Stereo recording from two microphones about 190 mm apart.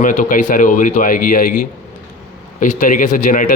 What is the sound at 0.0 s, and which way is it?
Speech, 45° left (ahead or behind).